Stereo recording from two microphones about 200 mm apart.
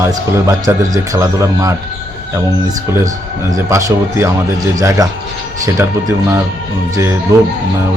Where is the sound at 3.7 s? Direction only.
15° right (ahead or behind).